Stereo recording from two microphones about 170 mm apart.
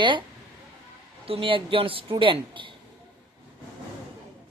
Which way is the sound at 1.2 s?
35° right (ahead or behind).